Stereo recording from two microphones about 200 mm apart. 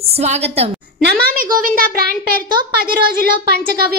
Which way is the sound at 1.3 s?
45° right (ahead or behind).